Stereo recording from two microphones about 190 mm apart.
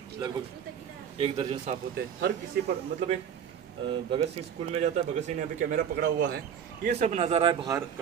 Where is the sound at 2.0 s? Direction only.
60° right (ahead or behind).